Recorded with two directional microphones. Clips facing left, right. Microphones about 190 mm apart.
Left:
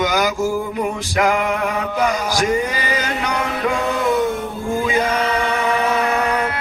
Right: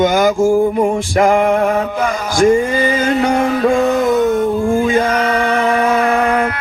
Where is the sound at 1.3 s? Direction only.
50° right (ahead or behind).